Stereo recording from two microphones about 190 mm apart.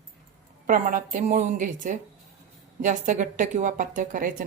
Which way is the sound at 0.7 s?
45° right (ahead or behind).